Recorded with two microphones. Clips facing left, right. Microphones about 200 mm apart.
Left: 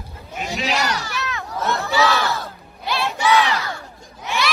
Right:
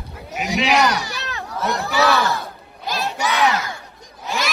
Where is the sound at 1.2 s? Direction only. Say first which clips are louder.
Left 1 dB; 35° right (ahead or behind).